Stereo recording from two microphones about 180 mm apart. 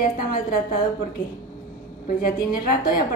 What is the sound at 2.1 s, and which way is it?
Speech, 55° left (ahead or behind).